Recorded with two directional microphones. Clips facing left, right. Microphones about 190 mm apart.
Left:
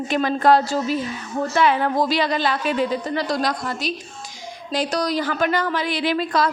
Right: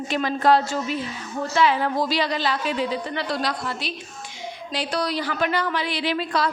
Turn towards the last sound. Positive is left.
turn(degrees=45)  # may be behind; listen again after turning